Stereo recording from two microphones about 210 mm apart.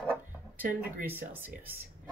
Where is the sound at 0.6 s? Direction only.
40° right (ahead or behind).